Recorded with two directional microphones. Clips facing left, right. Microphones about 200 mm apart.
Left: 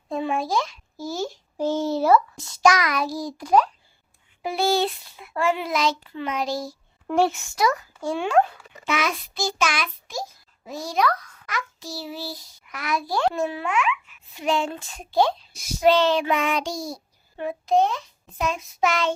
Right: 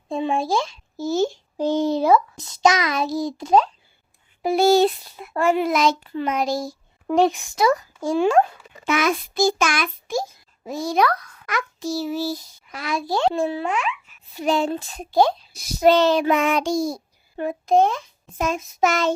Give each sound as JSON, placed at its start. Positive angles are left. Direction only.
{"t": 0.1, "sound": "a child's voice", "side_deg": -25}
{"t": 4.4, "sound": "a child's voice", "side_deg": -40}
{"t": 7.1, "sound": "speech", "side_deg": -15}
{"t": 8.0, "sound": "a child's voice", "side_deg": -40}
{"t": 12.7, "sound": "a child's voice", "side_deg": -25}